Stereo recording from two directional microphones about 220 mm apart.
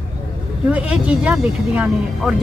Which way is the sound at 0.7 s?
5° right (ahead or behind).